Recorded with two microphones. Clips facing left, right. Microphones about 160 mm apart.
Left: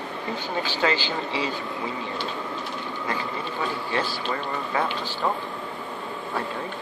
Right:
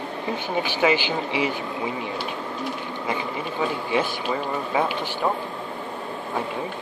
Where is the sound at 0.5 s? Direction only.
15° right (ahead or behind).